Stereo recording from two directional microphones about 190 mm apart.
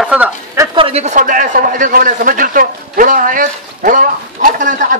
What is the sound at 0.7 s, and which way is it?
A man's voice, 30° right (ahead or behind).